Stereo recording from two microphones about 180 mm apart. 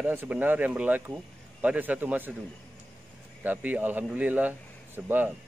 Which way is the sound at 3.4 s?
10° right (ahead or behind).